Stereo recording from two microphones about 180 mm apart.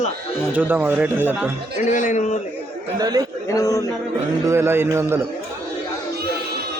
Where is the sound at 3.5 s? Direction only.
20° left (ahead or behind).